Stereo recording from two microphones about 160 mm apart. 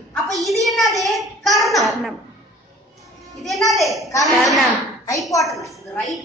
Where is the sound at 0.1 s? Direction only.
Centre (ahead or behind).